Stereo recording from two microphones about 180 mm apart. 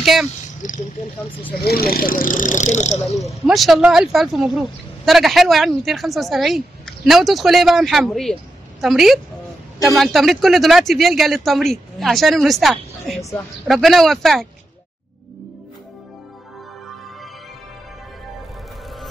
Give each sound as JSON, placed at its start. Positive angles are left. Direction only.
{"t": 0.0, "sound": "speech", "side_deg": 0}
{"t": 0.6, "sound": "speech", "side_deg": 45}
{"t": 1.6, "sound": "speech", "side_deg": 60}
{"t": 3.2, "sound": "speech", "side_deg": 0}